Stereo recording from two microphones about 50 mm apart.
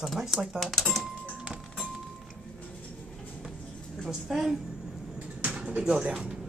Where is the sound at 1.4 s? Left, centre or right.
Centre.